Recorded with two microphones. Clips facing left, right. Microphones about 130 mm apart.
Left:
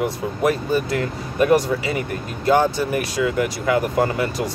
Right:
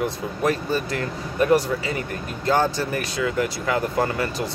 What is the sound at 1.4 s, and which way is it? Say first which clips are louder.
Speech: left 2 dB; 20° left (ahead or behind).